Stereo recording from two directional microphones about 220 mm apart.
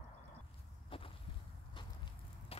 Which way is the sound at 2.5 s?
25° left (ahead or behind).